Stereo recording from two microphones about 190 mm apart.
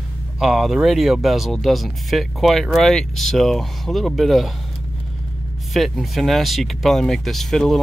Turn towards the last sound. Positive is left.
turn(degrees=0)  # may be behind; listen again after turning